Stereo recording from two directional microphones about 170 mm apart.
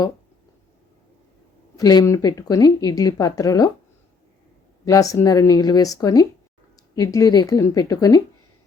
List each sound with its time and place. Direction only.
1.7 s speech: 25° left (ahead or behind)
4.9 s speech: 20° left (ahead or behind)